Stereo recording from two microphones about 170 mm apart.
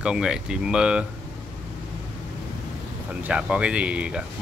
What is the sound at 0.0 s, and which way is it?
Speech, 5° right (ahead or behind).